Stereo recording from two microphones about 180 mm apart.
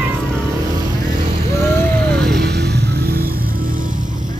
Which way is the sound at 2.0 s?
5° left (ahead or behind).